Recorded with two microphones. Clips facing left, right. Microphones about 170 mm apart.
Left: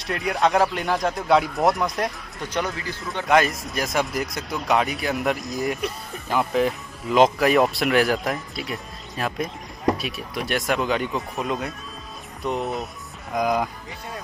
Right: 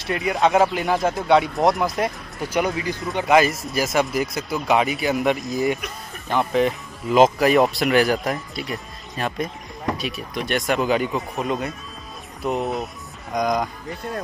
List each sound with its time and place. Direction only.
0.0 s speech: centre (ahead or behind)
2.6 s speech: 15° right (ahead or behind)
3.3 s speech: 5° right (ahead or behind)